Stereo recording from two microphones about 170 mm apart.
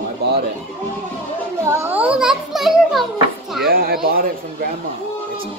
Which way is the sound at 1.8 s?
10° right (ahead or behind).